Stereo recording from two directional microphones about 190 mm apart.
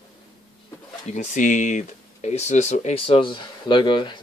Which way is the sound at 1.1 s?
40° left (ahead or behind).